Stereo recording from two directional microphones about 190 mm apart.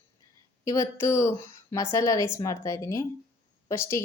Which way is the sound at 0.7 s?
15° left (ahead or behind).